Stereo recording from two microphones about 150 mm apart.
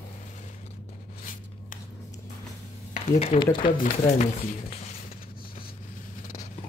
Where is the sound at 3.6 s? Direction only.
65° left (ahead or behind).